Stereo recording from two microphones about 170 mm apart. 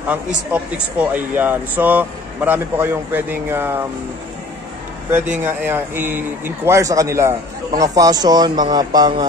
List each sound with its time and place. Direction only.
0.0 s speech: 10° right (ahead or behind)
5.1 s speech: 10° right (ahead or behind)